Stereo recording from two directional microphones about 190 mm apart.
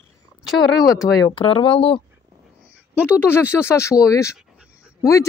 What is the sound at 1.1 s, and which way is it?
Speech, 25° left (ahead or behind).